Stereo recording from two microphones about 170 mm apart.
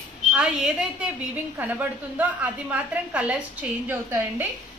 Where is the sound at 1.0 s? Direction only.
10° right (ahead or behind).